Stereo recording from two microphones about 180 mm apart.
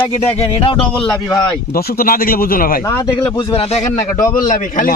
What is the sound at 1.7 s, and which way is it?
A man's voice, 55° left (ahead or behind).